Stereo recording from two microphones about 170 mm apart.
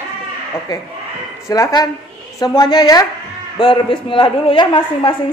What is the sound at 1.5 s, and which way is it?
A woman's voice, 20° left (ahead or behind).